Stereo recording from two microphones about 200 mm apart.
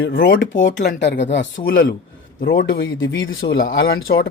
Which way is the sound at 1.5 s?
45° left (ahead or behind).